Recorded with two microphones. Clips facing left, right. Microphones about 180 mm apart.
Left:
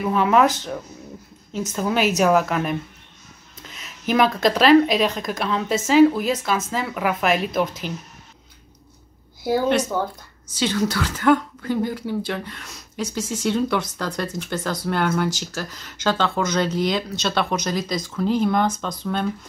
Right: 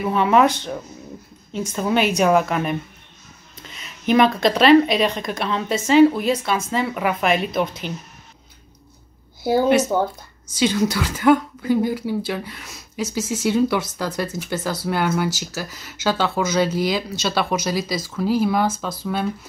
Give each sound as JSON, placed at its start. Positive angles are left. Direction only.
{"t": 0.0, "sound": "speech", "side_deg": 0}
{"t": 9.9, "sound": "speech", "side_deg": -25}
{"t": 10.6, "sound": "speech", "side_deg": -10}